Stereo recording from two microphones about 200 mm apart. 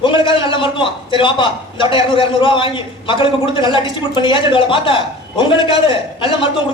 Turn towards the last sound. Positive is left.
turn(degrees=25)  # may be behind; listen again after turning